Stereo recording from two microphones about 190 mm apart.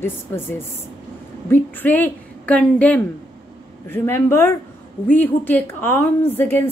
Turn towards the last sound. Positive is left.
turn(degrees=10)  # may be behind; listen again after turning